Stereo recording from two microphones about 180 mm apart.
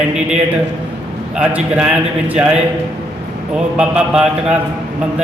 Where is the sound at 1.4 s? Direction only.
5° right (ahead or behind).